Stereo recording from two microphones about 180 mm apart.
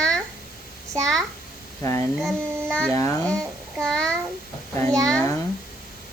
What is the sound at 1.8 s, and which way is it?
Speech, 15° left (ahead or behind).